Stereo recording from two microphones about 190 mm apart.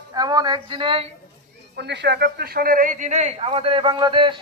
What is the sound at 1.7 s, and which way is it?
A man's voice, 65° right (ahead or behind).